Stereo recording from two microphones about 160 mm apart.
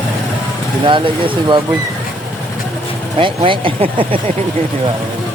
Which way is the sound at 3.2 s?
30° right (ahead or behind).